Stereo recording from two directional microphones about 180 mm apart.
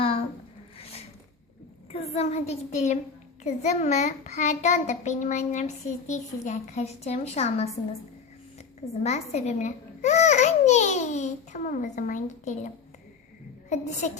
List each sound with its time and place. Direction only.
0.0 s a sound: 30° left (ahead or behind)
0.8 s zipper: 35° left (ahead or behind)
1.9 s a child's voice: 35° left (ahead or behind)
9.0 s a child's voice: 40° left (ahead or behind)